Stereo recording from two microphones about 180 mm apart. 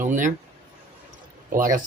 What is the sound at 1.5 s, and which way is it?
Speech, 50° right (ahead or behind).